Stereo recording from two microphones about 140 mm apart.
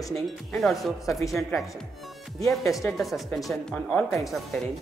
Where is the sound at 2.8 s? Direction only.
Centre (ahead or behind).